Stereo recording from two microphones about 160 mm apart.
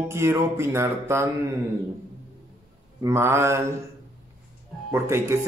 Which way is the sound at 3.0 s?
15° right (ahead or behind).